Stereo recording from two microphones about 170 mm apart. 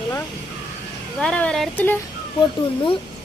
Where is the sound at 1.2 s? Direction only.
5° left (ahead or behind).